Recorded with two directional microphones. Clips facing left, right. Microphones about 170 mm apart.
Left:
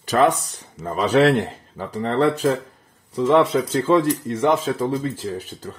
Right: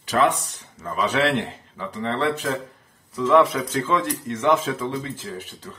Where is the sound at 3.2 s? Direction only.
30° left (ahead or behind).